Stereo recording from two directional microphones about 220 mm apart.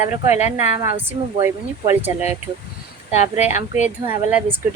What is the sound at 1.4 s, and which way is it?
Speech, 10° right (ahead or behind).